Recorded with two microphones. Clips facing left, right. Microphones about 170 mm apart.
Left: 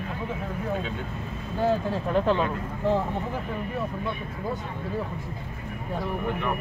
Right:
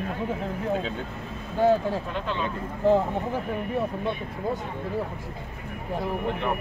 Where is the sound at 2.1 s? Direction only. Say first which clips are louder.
Left 8 dB; 45° left (ahead or behind).